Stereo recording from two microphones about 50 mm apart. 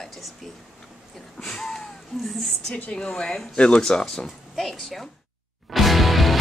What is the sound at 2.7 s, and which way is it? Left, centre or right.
A woman's voice, centre.